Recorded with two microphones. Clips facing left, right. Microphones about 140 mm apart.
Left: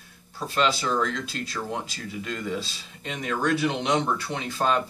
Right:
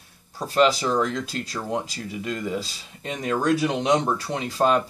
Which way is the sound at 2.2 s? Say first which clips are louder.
Right 2 dB; 15° right (ahead or behind).